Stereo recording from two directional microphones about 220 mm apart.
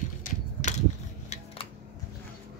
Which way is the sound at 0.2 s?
35° left (ahead or behind).